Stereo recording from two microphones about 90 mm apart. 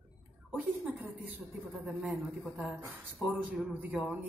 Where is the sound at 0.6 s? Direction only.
20° right (ahead or behind).